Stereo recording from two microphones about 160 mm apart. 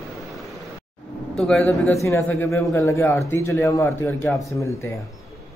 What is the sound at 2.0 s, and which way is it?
A man's voice, 15° left (ahead or behind).